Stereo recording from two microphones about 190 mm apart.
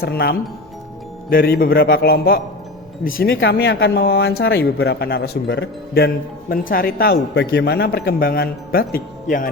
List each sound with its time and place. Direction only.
0.0 s a man's voice: 55° left (ahead or behind)
6.5 s a man's voice: 50° left (ahead or behind)